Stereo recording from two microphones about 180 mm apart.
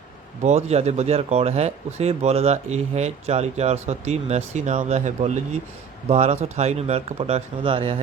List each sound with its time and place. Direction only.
0.4 s speech: 35° right (ahead or behind)